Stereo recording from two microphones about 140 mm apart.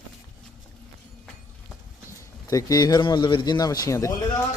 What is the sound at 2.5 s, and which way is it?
A man's voice, 25° left (ahead or behind).